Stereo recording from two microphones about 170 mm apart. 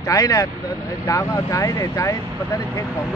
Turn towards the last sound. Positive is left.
turn(degrees=20)  # may be behind; listen again after turning